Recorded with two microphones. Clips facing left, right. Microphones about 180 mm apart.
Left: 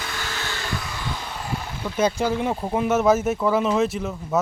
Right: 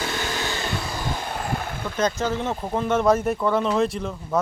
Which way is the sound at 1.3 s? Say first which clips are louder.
Right 3 dB; 55° right (ahead or behind).